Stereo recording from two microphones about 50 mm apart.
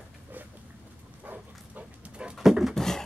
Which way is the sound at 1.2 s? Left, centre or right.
Right.